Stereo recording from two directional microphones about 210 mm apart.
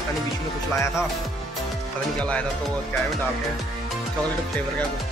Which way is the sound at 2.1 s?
5° left (ahead or behind).